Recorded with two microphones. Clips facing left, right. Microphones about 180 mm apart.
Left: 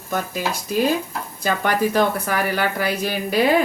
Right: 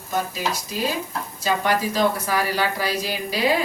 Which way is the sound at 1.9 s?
55° left (ahead or behind).